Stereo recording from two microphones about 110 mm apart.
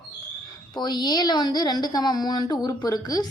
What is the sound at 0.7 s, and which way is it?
A woman's voice, 40° left (ahead or behind).